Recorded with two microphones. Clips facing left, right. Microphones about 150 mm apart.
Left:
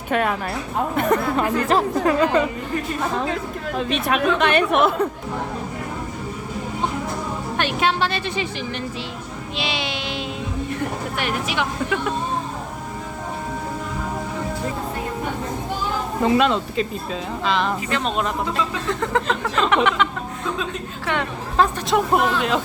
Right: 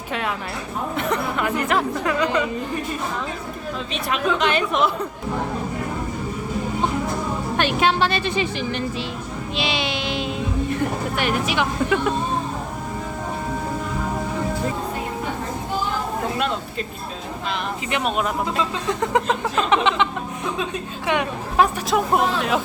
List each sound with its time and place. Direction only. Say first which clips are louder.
0.1 s speech: left 5 dB; 50° left (ahead or behind)
1.4 s speech: left 2 dB; 30° left (ahead or behind)
3.8 s speech: left 3 dB; 55° left (ahead or behind)
7.5 s speech: right 2 dB; 15° right (ahead or behind)
9.6 s speech: right 2 dB; 20° right (ahead or behind)
16.2 s speech: left 6 dB; 90° left
17.9 s speech: right 4 dB; 10° right (ahead or behind)
21.8 s speech: left 1 dB; centre (ahead or behind)